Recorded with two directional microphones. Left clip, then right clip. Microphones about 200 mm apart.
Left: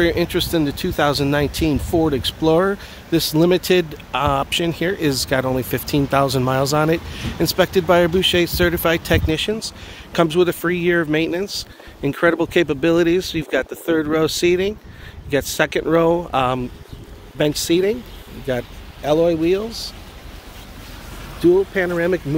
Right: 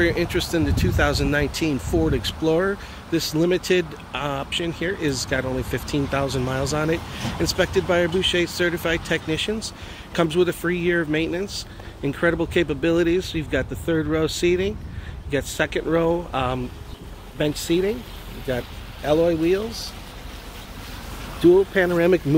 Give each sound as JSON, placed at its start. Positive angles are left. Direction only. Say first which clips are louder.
{"t": 0.0, "sound": "speech", "louder": "left 3 dB", "side_deg": 35}
{"t": 3.2, "sound": "speech", "louder": "left 5 dB", "side_deg": 40}
{"t": 21.5, "sound": "speech", "louder": "even", "side_deg": 5}
{"t": 21.9, "sound": "speech", "louder": "right 2 dB", "side_deg": -10}